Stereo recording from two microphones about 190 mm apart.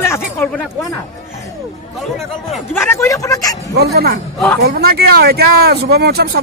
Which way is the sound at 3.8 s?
55° right (ahead or behind).